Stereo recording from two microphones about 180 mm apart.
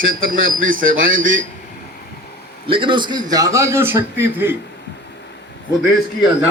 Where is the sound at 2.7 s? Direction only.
25° right (ahead or behind).